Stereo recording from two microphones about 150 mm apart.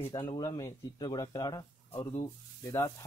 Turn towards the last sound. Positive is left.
turn(degrees=20)  # may be behind; listen again after turning